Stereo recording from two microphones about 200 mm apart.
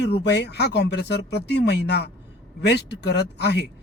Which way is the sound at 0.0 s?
60° left (ahead or behind).